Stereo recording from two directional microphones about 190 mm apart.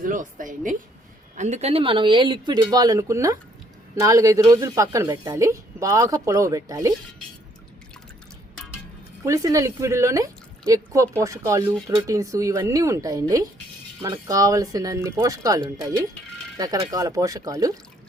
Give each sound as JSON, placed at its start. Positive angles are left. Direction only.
{"t": 0.0, "sound": "a woman's voice", "side_deg": -45}
{"t": 9.2, "sound": "speech", "side_deg": -15}